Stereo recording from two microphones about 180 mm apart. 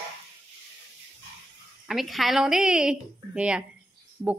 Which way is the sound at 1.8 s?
Centre (ahead or behind).